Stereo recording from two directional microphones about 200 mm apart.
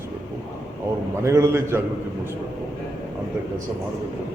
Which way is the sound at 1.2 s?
15° right (ahead or behind).